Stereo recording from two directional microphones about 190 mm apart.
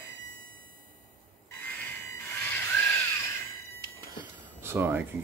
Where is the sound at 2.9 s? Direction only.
15° left (ahead or behind).